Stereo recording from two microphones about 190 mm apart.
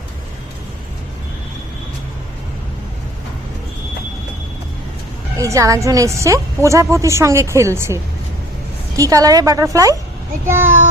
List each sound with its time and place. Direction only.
5.4 s a woman's voice: 15° right (ahead or behind)
9.0 s a woman's voice: 20° right (ahead or behind)